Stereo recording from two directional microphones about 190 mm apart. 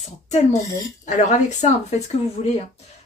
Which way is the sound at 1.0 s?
40° left (ahead or behind).